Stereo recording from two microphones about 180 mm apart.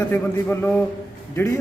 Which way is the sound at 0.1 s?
10° left (ahead or behind).